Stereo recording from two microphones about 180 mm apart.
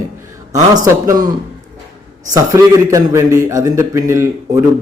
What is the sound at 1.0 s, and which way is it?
Speech, 20° right (ahead or behind).